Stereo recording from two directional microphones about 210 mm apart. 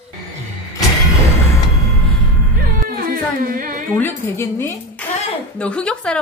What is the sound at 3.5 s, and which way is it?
Speech, 40° right (ahead or behind).